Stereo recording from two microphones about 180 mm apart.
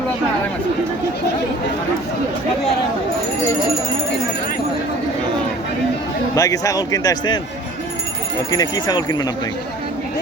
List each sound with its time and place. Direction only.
6.3 s speech: 20° left (ahead or behind)
8.4 s speech: 20° left (ahead or behind)